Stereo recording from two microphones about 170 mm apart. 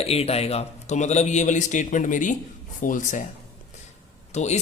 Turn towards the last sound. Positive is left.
turn(degrees=40)  # may be behind; listen again after turning